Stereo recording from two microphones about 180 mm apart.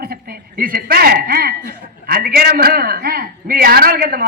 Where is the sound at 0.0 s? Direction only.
55° right (ahead or behind).